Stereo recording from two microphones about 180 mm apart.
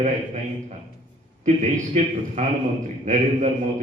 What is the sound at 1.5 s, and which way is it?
A man's voice, 40° right (ahead or behind).